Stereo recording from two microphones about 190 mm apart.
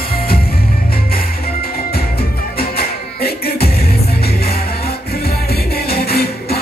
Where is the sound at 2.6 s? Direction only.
55° left (ahead or behind).